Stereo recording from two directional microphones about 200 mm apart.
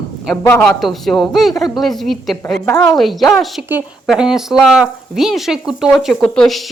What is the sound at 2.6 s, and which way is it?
Speech, 10° left (ahead or behind).